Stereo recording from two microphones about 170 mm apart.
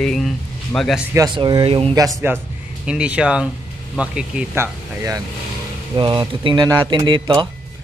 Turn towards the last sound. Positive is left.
turn(degrees=-30)  # may be behind; listen again after turning